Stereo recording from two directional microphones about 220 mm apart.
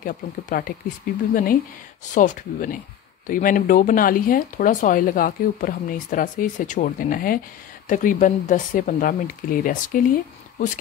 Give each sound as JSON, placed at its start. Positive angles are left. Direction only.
{"t": 0.0, "sound": "speech", "side_deg": 40}